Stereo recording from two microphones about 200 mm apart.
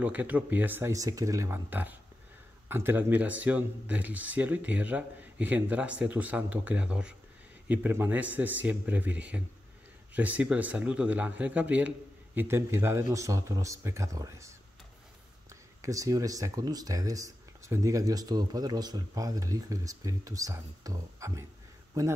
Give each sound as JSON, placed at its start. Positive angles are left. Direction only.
{"t": 0.0, "sound": "speech", "side_deg": -10}
{"t": 15.8, "sound": "speech", "side_deg": -15}